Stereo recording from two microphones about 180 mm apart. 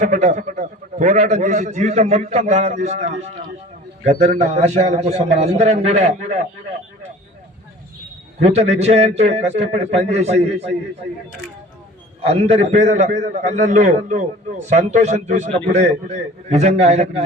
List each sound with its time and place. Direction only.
0.0 s a man's voice: 40° right (ahead or behind)
8.4 s a man's voice: 35° right (ahead or behind)
12.2 s a man's voice: 35° right (ahead or behind)